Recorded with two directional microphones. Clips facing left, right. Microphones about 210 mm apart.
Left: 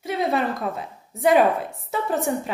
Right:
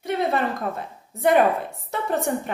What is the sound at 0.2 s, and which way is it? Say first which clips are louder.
Speech: left 3 dB; 15° left (ahead or behind).